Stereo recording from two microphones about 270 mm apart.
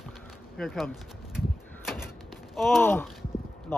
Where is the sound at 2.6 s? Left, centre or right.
Centre.